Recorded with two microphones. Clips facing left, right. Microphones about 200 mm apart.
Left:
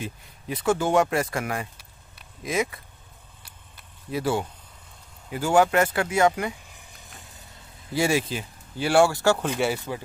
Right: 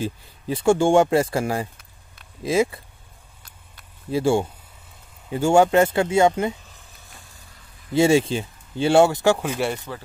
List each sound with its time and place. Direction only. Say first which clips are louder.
0.0 s speech: right 7 dB; 30° right (ahead or behind)
4.1 s speech: right 6 dB; 25° right (ahead or behind)
6.7 s a sound: left 1 dB; 20° left (ahead or behind)
7.9 s speech: right 7 dB; 25° right (ahead or behind); by 9.7 s 10° right (ahead or behind)
9.9 s speech: left 2 dB; 15° left (ahead or behind)